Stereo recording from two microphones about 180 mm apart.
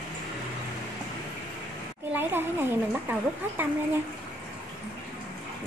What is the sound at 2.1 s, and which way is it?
Speech, 10° right (ahead or behind).